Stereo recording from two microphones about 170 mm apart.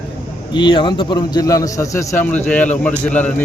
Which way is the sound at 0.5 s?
30° left (ahead or behind).